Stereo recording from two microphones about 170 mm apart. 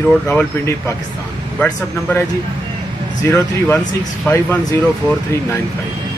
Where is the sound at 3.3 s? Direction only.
10° left (ahead or behind).